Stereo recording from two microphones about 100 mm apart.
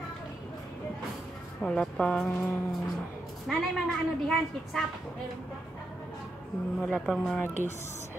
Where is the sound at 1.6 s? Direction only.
10° left (ahead or behind).